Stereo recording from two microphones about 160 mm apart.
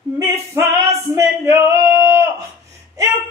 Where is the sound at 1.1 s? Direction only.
20° right (ahead or behind).